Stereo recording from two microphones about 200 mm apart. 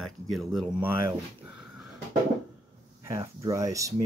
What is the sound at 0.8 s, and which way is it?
Speech, 10° right (ahead or behind).